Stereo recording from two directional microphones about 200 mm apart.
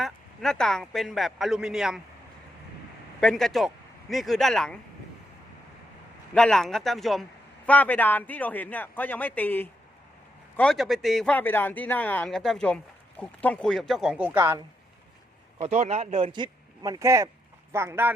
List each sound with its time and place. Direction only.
0.0 s speech: centre (ahead or behind)
3.2 s speech: 5° left (ahead or behind)
6.3 s speech: 5° left (ahead or behind)
15.6 s speech: 35° right (ahead or behind); by 18.1 s 10° right (ahead or behind)